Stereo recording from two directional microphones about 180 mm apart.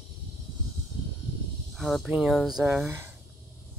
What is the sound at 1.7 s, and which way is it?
Speech, centre (ahead or behind).